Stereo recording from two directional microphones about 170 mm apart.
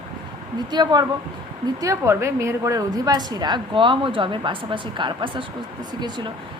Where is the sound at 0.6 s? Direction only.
25° right (ahead or behind).